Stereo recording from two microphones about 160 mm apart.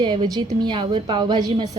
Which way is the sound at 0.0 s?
30° right (ahead or behind).